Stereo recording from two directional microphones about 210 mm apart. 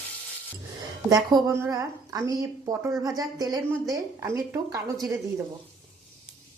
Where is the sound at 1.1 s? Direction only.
15° right (ahead or behind).